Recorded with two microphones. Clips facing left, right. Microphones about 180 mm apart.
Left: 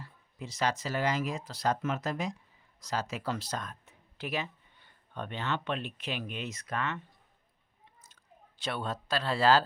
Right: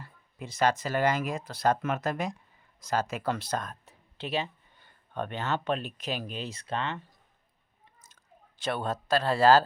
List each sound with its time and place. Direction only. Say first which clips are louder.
0.0 s speech: right 1 dB; 55° right (ahead or behind)
4.2 s speech: right 3 dB; 30° right (ahead or behind)
4.8 s speech: right 6 dB; 50° right (ahead or behind); by 7.0 s 30° right (ahead or behind)
8.0 s speech: right 1 dB; 45° right (ahead or behind)